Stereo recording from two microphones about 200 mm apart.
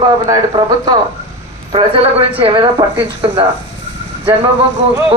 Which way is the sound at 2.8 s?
20° right (ahead or behind).